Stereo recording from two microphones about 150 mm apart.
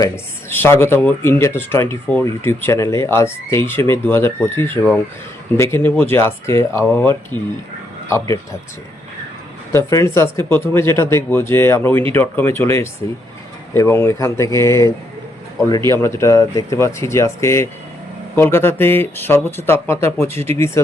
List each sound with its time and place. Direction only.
0.5 s speech: 15° left (ahead or behind)
9.7 s speech: 20° left (ahead or behind)